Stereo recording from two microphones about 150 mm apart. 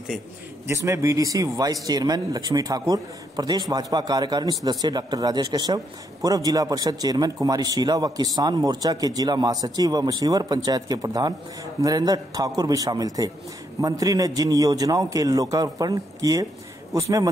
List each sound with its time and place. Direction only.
0.7 s a man's voice: 20° right (ahead or behind)